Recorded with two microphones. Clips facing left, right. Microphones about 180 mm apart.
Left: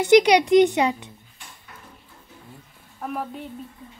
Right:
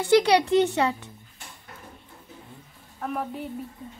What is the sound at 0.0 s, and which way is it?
Speech, 15° left (ahead or behind).